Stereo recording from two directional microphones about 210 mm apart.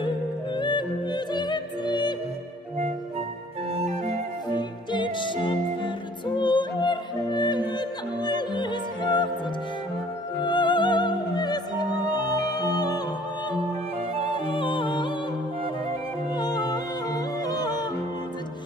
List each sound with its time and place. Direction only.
0.6 s music: 20° left (ahead or behind)
3.8 s music: 30° right (ahead or behind)
4.5 s music: 20° left (ahead or behind)
10.4 s opera: 20° left (ahead or behind)
14.5 s music: 25° left (ahead or behind)
16.3 s music: 20° left (ahead or behind)